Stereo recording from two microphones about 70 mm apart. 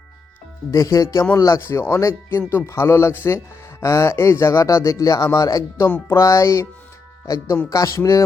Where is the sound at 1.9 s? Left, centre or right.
Left.